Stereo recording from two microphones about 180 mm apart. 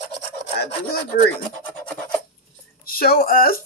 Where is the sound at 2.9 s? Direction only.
55° left (ahead or behind).